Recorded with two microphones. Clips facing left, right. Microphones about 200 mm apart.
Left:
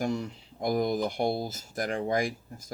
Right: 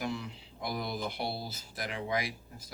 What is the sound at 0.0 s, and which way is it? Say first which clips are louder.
Speech: left 6 dB; 45° left (ahead or behind).